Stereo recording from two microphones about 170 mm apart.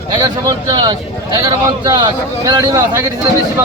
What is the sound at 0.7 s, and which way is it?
Speech, 25° right (ahead or behind).